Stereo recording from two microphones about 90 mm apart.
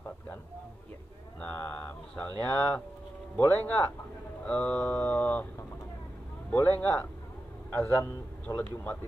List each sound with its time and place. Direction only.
1.4 s a sound: 20° left (ahead or behind)
2.4 s a man's voice: 20° left (ahead or behind)
6.5 s a man's voice: 20° left (ahead or behind)